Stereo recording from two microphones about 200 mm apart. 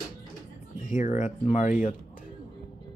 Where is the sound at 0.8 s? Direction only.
35° left (ahead or behind).